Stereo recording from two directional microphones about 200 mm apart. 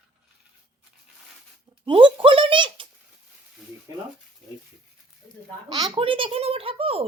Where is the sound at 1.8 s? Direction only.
25° right (ahead or behind).